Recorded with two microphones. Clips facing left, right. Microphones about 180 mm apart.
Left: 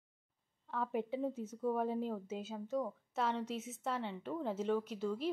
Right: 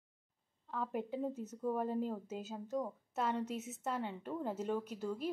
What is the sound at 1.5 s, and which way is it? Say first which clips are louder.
Speech: left 2 dB; 15° right (ahead or behind).